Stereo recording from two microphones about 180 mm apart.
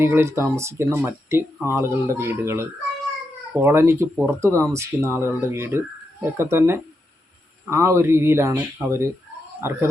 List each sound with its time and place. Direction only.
0.0 s speech: 15° right (ahead or behind)